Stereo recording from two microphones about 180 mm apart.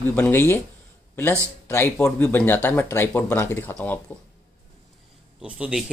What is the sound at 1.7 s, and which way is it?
Speech, 10° left (ahead or behind).